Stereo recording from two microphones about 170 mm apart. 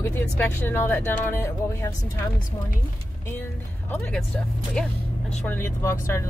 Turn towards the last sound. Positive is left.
turn(degrees=15)  # may be behind; listen again after turning